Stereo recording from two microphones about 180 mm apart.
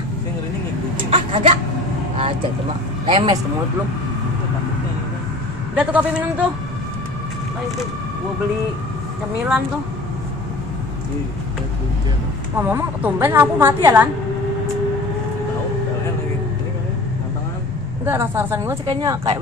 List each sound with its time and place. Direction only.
1.1 s speech: 35° right (ahead or behind)
5.8 s a woman's voice: 10° right (ahead or behind)
12.5 s a woman's voice: 10° right (ahead or behind)
18.0 s a woman's voice: 15° right (ahead or behind)
18.9 s speech: 25° right (ahead or behind)